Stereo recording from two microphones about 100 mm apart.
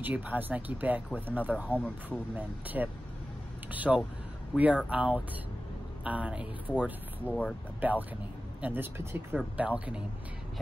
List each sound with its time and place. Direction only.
0.0 s speech: 15° right (ahead or behind)
6.7 s speech: 15° left (ahead or behind)
7.8 s speech: 20° right (ahead or behind)